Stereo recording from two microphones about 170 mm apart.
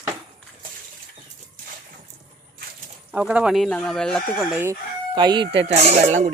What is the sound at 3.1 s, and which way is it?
Speech, 5° right (ahead or behind).